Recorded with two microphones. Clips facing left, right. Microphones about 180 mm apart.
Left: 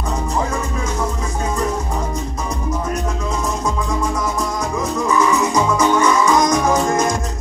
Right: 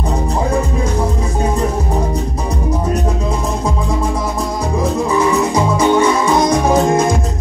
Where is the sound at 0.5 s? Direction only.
35° right (ahead or behind).